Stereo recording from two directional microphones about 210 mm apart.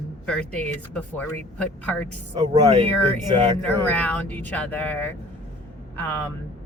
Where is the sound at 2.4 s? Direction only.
20° right (ahead or behind).